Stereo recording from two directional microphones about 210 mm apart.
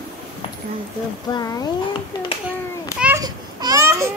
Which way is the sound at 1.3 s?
20° left (ahead or behind).